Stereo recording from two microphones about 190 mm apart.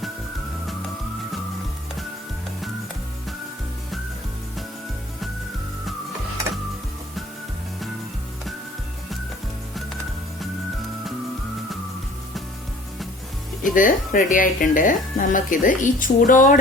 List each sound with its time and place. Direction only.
13.7 s speech: 45° left (ahead or behind)